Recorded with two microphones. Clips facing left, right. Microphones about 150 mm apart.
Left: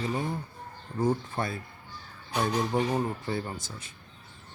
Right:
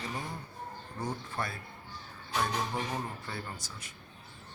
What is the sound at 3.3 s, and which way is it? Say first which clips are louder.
Speech: left 8 dB; 25° left (ahead or behind).